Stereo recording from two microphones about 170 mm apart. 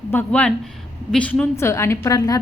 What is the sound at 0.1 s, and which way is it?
A woman's voice, 10° left (ahead or behind).